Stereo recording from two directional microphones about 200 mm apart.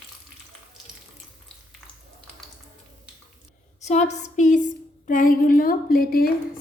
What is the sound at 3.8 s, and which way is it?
A woman's voice, 35° left (ahead or behind).